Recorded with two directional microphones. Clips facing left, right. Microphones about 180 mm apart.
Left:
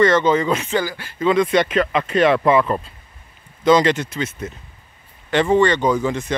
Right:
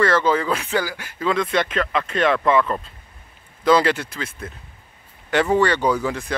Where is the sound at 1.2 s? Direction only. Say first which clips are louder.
Left 5 dB; centre (ahead or behind).